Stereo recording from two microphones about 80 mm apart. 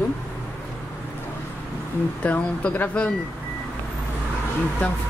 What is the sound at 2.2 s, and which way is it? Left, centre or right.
Speech, centre.